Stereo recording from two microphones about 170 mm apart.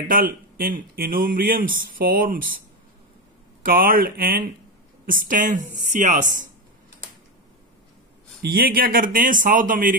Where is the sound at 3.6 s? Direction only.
55° right (ahead or behind).